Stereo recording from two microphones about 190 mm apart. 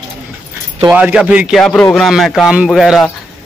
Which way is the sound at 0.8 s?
5° right (ahead or behind).